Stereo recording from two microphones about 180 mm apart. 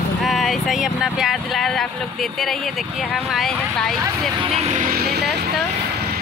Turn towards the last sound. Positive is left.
turn(degrees=-65)  # may be behind; listen again after turning